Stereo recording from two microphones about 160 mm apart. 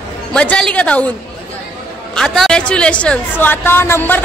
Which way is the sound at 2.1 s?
Centre (ahead or behind).